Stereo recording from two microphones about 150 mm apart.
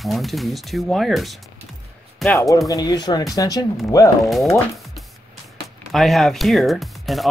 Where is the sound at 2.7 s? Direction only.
25° left (ahead or behind).